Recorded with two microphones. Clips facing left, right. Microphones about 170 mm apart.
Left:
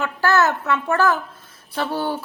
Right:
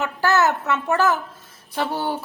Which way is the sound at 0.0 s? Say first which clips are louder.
Left 1 dB; 15° right (ahead or behind).